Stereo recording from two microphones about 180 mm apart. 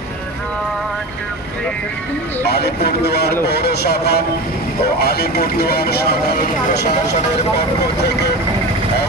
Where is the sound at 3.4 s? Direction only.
60° left (ahead or behind).